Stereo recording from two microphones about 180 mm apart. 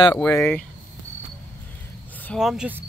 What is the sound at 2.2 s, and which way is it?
Speech, centre (ahead or behind).